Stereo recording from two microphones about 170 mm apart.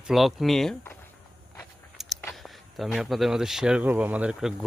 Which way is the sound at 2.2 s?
Centre (ahead or behind).